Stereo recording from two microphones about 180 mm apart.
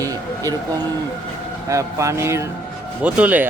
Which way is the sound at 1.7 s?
15° right (ahead or behind).